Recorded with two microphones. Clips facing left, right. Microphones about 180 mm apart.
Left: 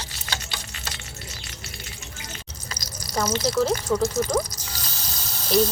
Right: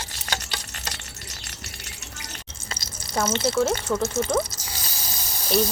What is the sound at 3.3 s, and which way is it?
Speech, 25° right (ahead or behind).